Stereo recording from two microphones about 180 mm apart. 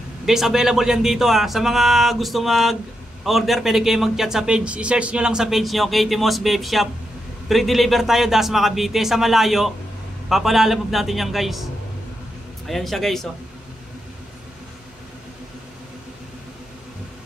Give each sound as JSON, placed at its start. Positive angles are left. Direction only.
{"t": 0.2, "sound": "speech", "side_deg": 0}